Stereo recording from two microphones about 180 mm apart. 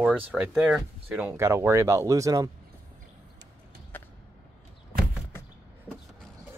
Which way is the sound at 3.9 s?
10° left (ahead or behind).